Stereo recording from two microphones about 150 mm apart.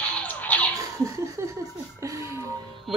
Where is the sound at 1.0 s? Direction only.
20° right (ahead or behind).